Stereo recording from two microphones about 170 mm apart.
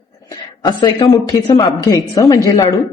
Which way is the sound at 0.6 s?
20° left (ahead or behind).